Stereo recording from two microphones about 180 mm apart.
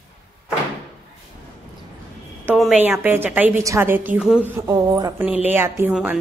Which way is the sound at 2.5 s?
5° right (ahead or behind).